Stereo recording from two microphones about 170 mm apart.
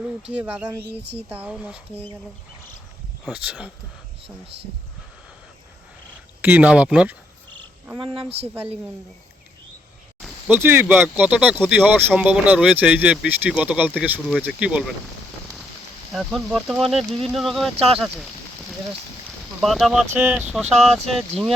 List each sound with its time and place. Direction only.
0.3 s speech: 10° right (ahead or behind)
3.2 s speech: 5° right (ahead or behind)
6.4 s speech: 10° right (ahead or behind)
8.3 s speech: 35° right (ahead or behind)
10.2 s a sound: centre (ahead or behind)
10.5 s speech: 15° right (ahead or behind)
16.1 s speech: centre (ahead or behind)
19.6 s speech: centre (ahead or behind)